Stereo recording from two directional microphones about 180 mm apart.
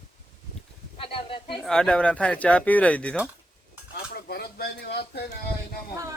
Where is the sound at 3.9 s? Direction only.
60° left (ahead or behind).